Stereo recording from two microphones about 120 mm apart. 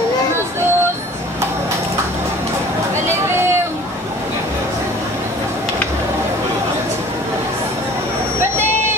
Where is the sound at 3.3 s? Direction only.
20° right (ahead or behind).